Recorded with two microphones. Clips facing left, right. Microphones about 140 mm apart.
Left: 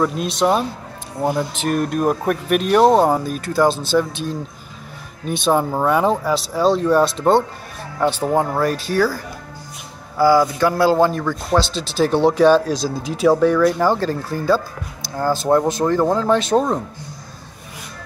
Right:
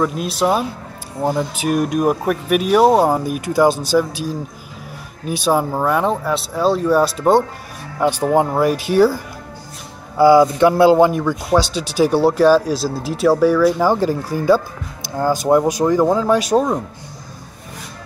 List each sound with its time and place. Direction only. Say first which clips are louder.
0.0 s speech: even; 5° right (ahead or behind)